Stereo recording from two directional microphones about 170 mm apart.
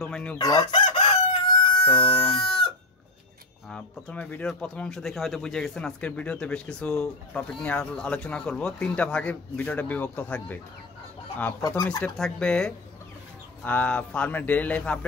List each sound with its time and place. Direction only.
0.0 s speech: 5° left (ahead or behind)
0.4 s chicken: 20° left (ahead or behind)
1.6 s music: 25° left (ahead or behind)
1.9 s speech: 10° left (ahead or behind)
2.4 s chicken: 30° left (ahead or behind)
3.7 s speech: 10° left (ahead or behind)
11.6 s speech: 20° left (ahead or behind)
12.0 s speech: 5° left (ahead or behind)